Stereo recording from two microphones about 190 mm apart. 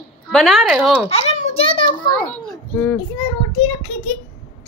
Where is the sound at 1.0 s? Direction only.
30° left (ahead or behind).